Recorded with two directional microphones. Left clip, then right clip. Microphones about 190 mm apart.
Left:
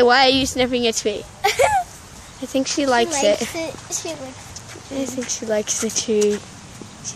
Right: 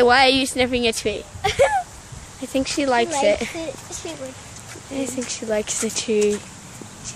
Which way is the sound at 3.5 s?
55° left (ahead or behind).